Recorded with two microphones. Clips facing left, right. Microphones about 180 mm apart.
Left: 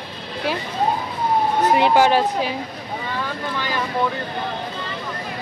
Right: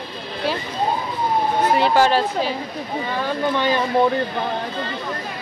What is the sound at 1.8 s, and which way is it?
Speech, 15° left (ahead or behind).